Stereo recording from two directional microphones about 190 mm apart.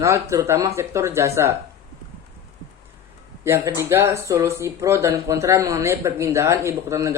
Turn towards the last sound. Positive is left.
turn(degrees=-15)  # may be behind; listen again after turning